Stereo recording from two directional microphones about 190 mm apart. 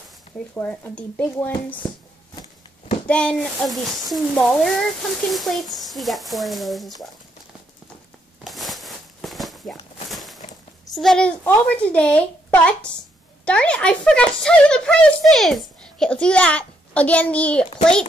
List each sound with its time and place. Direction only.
0.6 s speech: 10° left (ahead or behind)
3.1 s speech: 5° left (ahead or behind)
8.5 s a sound: centre (ahead or behind)
10.9 s speech: centre (ahead or behind)